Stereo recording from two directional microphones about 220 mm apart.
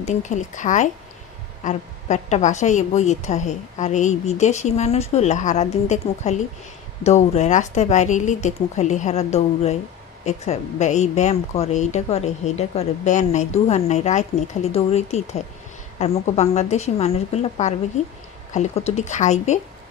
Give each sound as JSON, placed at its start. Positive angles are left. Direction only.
{"t": 0.0, "sound": "a woman's voice", "side_deg": 30}